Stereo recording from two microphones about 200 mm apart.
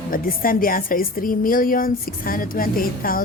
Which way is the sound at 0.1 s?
45° left (ahead or behind).